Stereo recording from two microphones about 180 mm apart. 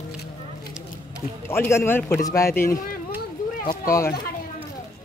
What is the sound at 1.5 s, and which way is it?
A man's voice, 15° left (ahead or behind).